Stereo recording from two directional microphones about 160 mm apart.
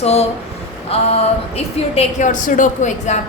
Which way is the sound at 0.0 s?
40° left (ahead or behind).